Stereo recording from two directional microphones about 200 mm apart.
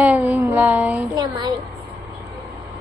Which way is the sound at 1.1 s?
20° right (ahead or behind).